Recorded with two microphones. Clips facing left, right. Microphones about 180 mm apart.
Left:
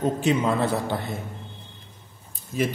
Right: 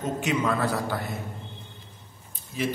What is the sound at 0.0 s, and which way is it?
A woman's voice, 30° left (ahead or behind).